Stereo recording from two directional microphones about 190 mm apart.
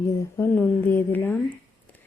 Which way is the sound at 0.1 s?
15° left (ahead or behind).